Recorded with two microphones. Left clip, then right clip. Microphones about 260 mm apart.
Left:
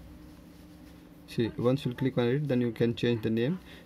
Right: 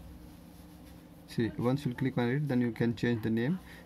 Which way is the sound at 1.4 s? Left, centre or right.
Centre.